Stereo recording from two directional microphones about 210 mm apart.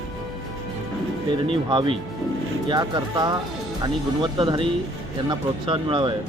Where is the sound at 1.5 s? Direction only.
25° right (ahead or behind).